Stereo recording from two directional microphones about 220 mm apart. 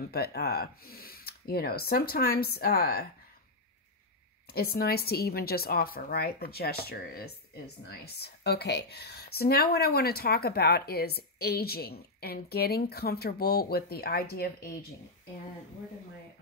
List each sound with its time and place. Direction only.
0.1 s speech: 45° left (ahead or behind)
4.5 s speech: 45° left (ahead or behind)